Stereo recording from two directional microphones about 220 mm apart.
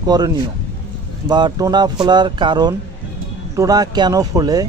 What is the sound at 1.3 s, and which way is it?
Speech, 20° right (ahead or behind).